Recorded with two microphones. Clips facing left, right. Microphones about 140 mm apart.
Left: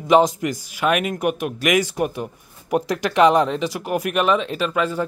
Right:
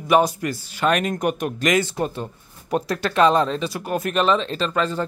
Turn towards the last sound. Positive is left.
turn(degrees=10)  # may be behind; listen again after turning